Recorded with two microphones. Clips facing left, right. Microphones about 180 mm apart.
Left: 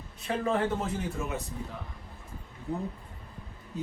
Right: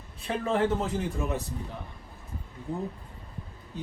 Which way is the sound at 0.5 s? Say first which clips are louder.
Right 7 dB; 35° right (ahead or behind).